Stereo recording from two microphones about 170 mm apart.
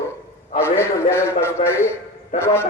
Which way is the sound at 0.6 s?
15° left (ahead or behind).